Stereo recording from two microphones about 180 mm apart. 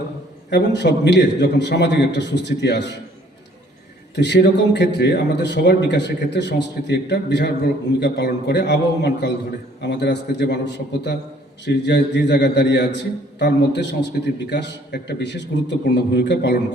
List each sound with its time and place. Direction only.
0.5 s a man's voice: 70° left (ahead or behind)
4.1 s a man's voice: 70° left (ahead or behind)